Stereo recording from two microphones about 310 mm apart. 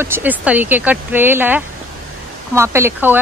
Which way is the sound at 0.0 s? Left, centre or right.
Centre.